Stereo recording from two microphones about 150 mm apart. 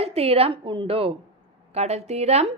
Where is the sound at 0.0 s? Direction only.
40° right (ahead or behind).